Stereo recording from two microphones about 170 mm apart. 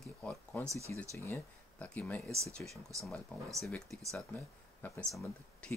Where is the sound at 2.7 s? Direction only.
20° right (ahead or behind).